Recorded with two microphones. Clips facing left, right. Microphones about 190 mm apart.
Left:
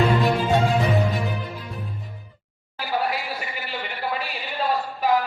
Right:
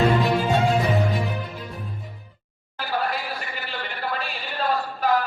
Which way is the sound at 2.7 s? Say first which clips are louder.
Left 1 dB; 10° left (ahead or behind).